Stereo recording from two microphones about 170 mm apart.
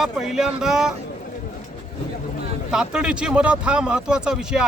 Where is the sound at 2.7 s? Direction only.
5° right (ahead or behind).